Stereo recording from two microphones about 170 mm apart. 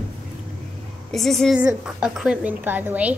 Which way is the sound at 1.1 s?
Centre (ahead or behind).